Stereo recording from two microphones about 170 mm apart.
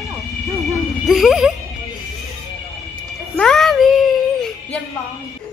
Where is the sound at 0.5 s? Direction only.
Centre (ahead or behind).